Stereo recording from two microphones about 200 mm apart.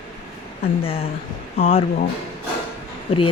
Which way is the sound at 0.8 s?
30° left (ahead or behind).